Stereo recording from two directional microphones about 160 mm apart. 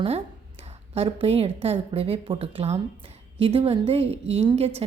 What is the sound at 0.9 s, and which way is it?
A woman's voice, 40° right (ahead or behind).